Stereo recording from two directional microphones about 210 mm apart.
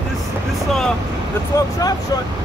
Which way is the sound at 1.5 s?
15° left (ahead or behind).